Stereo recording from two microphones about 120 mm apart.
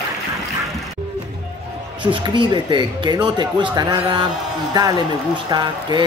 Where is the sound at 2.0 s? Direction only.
45° right (ahead or behind).